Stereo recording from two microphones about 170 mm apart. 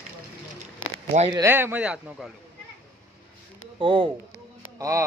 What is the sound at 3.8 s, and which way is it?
Speech, 30° right (ahead or behind).